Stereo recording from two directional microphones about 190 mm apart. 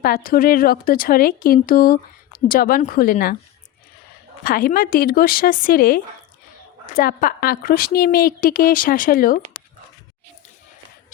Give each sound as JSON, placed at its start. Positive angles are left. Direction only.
{"t": 0.0, "sound": "speech", "side_deg": 50}
{"t": 4.4, "sound": "speech", "side_deg": 50}